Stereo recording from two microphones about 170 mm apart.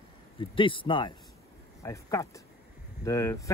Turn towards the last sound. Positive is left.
turn(degrees=20)  # may be behind; listen again after turning